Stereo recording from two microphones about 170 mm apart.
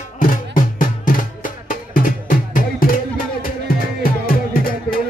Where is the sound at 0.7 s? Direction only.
50° left (ahead or behind).